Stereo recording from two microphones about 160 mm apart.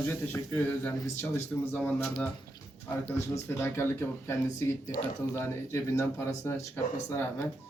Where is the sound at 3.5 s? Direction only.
10° left (ahead or behind).